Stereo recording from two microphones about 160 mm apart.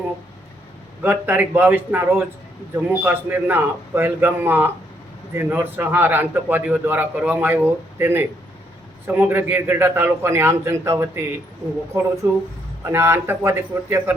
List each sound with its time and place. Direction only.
1.0 s a man's voice: 10° right (ahead or behind)
12.2 s a man's voice: 15° right (ahead or behind)